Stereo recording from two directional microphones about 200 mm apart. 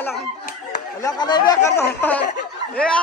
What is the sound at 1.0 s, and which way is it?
Speech, 20° left (ahead or behind).